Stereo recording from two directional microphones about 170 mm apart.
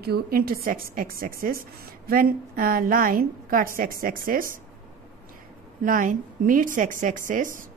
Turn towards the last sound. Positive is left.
turn(degrees=-50)  # may be behind; listen again after turning